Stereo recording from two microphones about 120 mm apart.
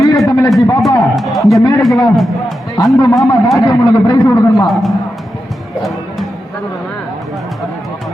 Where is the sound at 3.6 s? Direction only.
30° left (ahead or behind).